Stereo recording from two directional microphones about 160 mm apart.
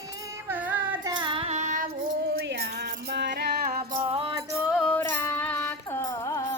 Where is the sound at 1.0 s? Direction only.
30° right (ahead or behind); by 1.9 s 50° right (ahead or behind).